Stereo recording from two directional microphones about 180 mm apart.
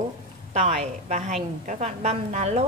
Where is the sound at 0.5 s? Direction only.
35° right (ahead or behind).